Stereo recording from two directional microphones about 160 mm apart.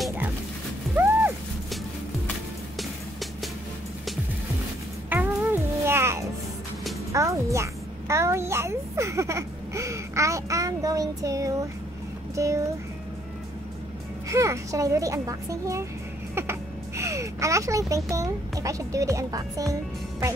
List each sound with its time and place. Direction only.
5.1 s music: 15° right (ahead or behind)
7.1 s a sound: 20° right (ahead or behind)
12.4 s a child's voice: 20° right (ahead or behind)
14.3 s a child's voice: 20° right (ahead or behind)